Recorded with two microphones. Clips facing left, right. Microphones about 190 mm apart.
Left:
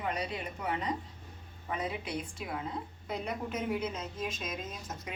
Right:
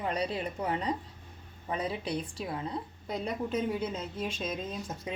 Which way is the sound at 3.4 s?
30° right (ahead or behind).